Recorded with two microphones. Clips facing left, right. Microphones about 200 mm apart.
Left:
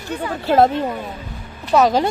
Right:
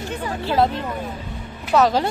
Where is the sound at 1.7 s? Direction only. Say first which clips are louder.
Left 2 dB; 15° left (ahead or behind).